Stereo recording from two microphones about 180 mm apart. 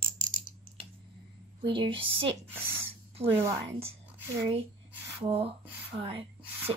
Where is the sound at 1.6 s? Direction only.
25° right (ahead or behind).